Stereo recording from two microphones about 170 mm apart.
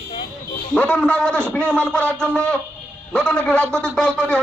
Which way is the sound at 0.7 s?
5° left (ahead or behind).